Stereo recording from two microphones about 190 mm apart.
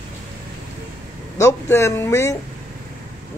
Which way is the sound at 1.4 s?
15° left (ahead or behind).